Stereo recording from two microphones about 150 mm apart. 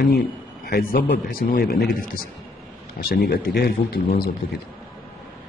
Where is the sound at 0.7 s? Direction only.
90° left.